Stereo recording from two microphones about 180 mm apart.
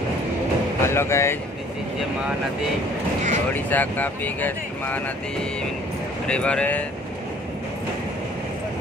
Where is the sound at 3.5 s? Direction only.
10° left (ahead or behind).